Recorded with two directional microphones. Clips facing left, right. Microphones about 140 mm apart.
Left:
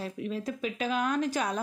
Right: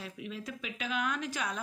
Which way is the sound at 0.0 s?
40° left (ahead or behind).